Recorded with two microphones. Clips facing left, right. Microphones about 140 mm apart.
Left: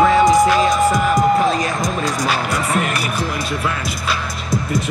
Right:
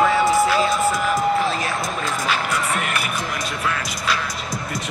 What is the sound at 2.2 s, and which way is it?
Music, 40° left (ahead or behind).